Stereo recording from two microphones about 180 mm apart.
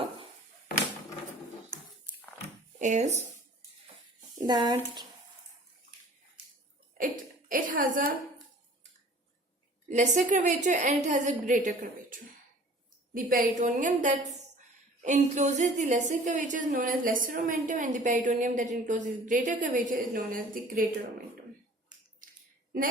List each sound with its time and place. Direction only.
2.7 s speech: 40° right (ahead or behind)
4.4 s speech: 20° right (ahead or behind)
7.0 s hiccup: 50° right (ahead or behind)
9.9 s a woman's voice: 40° right (ahead or behind)